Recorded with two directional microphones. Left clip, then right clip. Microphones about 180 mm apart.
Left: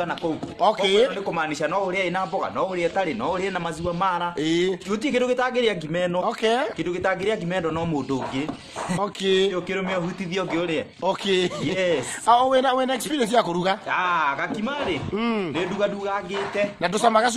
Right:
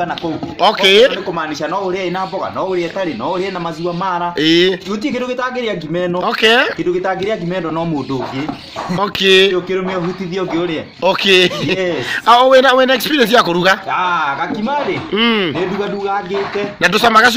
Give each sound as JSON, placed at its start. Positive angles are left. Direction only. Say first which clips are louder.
{"t": 0.6, "sound": "a man's voice", "louder": "right 10 dB", "side_deg": 0}
{"t": 3.8, "sound": "speech", "louder": "right 6 dB", "side_deg": 20}
{"t": 4.4, "sound": "a man's voice", "louder": "right 11 dB", "side_deg": 5}
{"t": 5.2, "sound": "speech", "louder": "even", "side_deg": 20}
{"t": 6.2, "sound": "a man's voice", "louder": "right 11 dB", "side_deg": 5}
{"t": 9.0, "sound": "a man's voice", "louder": "right 12 dB", "side_deg": 5}
{"t": 11.1, "sound": "a man's voice", "louder": "right 12 dB", "side_deg": 5}
{"t": 15.1, "sound": "a man's voice", "louder": "right 15 dB", "side_deg": 10}
{"t": 16.8, "sound": "a man's voice", "louder": "right 11 dB", "side_deg": 5}